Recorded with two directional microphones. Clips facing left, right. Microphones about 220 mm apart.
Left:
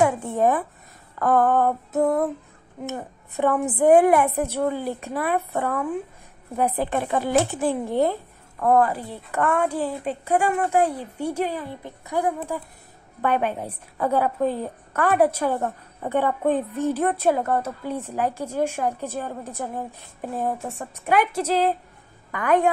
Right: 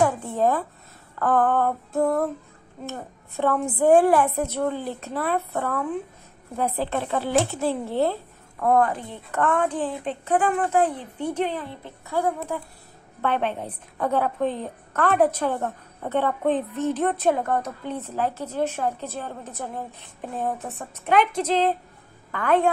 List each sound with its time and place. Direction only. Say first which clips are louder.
0.0 s a sound: left 1 dB; 20° left (ahead or behind)
1.2 s a woman's voice: left 2 dB; 10° left (ahead or behind)
8.5 s a woman's voice: left 1 dB; 5° left (ahead or behind)